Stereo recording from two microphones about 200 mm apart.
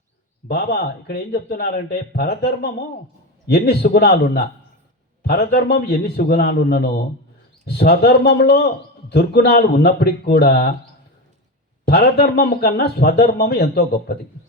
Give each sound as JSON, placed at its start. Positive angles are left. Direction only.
{"t": 0.4, "sound": "a man's voice", "side_deg": 50}
{"t": 11.9, "sound": "a man's voice", "side_deg": 55}